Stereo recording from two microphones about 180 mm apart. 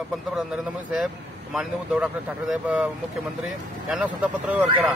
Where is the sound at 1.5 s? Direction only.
5° right (ahead or behind).